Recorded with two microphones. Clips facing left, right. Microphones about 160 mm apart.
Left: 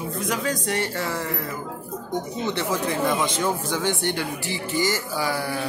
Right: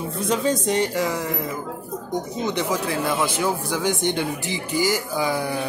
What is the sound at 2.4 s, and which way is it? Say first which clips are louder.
Speech: right 1 dB; 15° right (ahead or behind).